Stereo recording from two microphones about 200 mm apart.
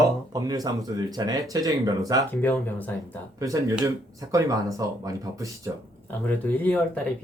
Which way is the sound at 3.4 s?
15° right (ahead or behind).